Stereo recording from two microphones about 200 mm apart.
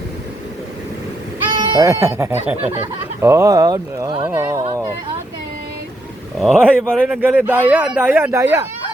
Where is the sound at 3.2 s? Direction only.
15° right (ahead or behind).